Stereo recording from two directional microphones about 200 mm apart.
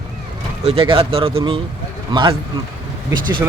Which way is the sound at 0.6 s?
30° right (ahead or behind).